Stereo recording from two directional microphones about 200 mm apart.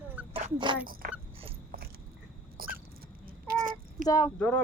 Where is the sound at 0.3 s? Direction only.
25° right (ahead or behind).